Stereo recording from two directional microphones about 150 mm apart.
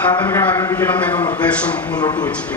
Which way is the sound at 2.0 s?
30° left (ahead or behind).